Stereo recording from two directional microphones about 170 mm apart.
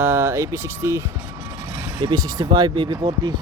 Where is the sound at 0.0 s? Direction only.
15° right (ahead or behind).